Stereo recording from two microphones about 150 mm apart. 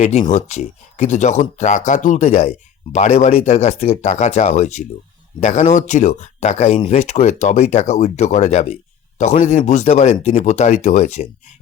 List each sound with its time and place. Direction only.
0.0 s speech: 50° left (ahead or behind)